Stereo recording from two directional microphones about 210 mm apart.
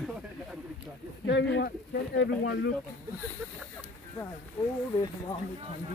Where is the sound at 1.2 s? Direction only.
55° left (ahead or behind).